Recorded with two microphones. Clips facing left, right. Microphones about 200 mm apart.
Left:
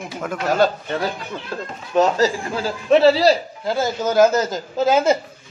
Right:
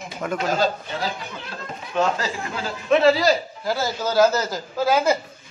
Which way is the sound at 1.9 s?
35° left (ahead or behind).